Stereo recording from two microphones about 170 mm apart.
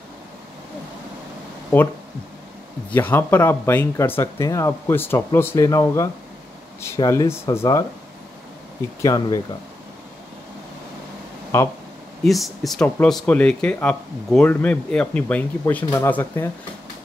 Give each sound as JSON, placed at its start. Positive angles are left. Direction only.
{"t": 2.9, "sound": "speech", "side_deg": 10}
{"t": 9.0, "sound": "speech", "side_deg": 20}
{"t": 11.5, "sound": "speech", "side_deg": 15}
{"t": 12.2, "sound": "speech", "side_deg": 0}